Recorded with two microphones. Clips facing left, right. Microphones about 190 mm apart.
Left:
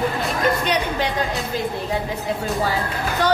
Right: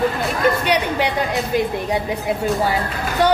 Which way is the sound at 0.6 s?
10° right (ahead or behind).